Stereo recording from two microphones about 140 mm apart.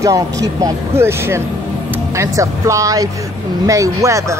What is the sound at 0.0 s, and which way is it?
Speech, 25° right (ahead or behind).